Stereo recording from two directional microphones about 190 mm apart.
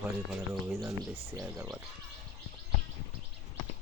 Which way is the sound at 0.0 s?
5° right (ahead or behind).